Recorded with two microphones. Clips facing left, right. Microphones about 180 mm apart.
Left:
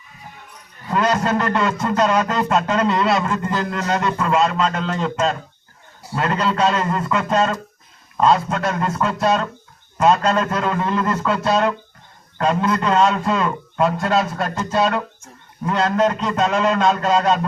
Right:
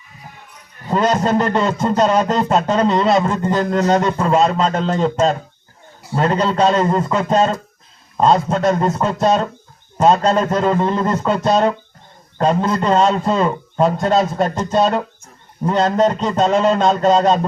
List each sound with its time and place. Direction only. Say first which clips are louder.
0.9 s a man's voice: right 3 dB; 30° right (ahead or behind)